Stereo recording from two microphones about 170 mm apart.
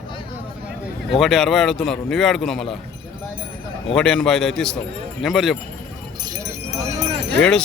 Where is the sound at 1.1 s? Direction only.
Centre (ahead or behind).